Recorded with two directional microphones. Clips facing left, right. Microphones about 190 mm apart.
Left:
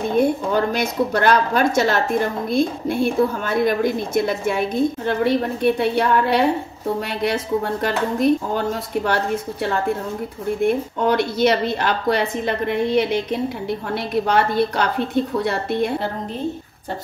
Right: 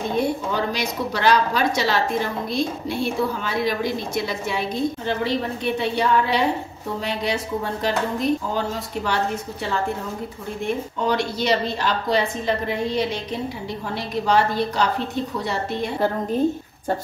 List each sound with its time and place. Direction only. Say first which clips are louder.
0.1 s speech: left 6 dB; 50° left (ahead or behind)
11.1 s speech: left 4 dB; 60° left (ahead or behind)